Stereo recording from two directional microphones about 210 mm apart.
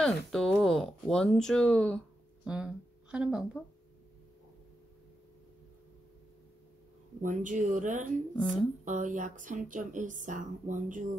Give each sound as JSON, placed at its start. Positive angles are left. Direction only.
{"t": 0.0, "sound": "speech", "side_deg": 0}
{"t": 7.2, "sound": "a woman's voice", "side_deg": -40}